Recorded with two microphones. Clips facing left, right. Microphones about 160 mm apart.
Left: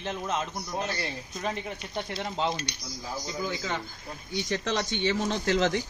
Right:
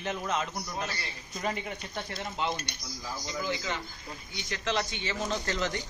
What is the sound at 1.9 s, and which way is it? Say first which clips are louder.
Speech: left 4 dB; 25° left (ahead or behind).